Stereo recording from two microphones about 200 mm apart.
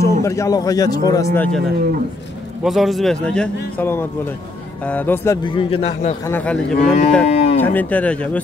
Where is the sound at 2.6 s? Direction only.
Centre (ahead or behind).